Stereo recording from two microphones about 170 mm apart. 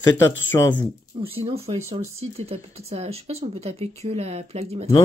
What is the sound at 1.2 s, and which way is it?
Speech, 35° right (ahead or behind).